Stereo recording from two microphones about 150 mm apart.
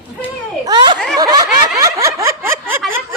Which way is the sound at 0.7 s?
30° right (ahead or behind).